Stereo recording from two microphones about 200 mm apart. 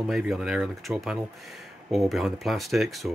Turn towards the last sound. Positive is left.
turn(degrees=0)  # may be behind; listen again after turning